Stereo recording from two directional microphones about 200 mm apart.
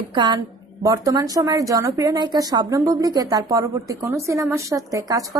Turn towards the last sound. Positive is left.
turn(degrees=-15)  # may be behind; listen again after turning